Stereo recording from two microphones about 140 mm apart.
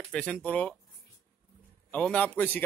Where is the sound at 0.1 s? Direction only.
5° left (ahead or behind).